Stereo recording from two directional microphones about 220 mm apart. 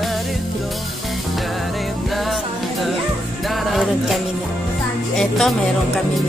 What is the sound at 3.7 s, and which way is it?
Music, centre (ahead or behind).